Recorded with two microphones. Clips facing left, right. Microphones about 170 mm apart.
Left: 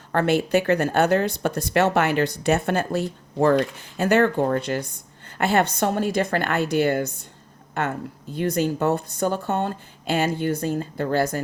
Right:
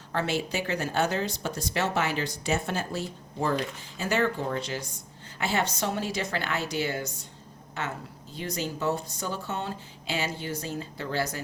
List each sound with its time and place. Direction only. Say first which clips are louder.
0.1 s speech: left 9 dB; 55° left (ahead or behind)